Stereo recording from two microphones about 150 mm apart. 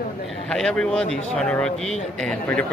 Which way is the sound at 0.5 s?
5° left (ahead or behind).